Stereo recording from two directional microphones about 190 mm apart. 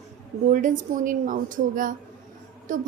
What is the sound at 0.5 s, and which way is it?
A woman's voice, 40° right (ahead or behind).